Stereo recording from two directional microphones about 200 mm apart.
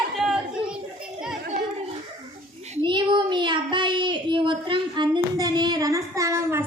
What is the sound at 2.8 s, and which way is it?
Child singing, 25° right (ahead or behind).